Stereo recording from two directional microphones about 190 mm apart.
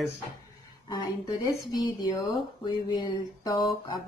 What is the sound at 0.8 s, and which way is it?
Mantra, 20° left (ahead or behind).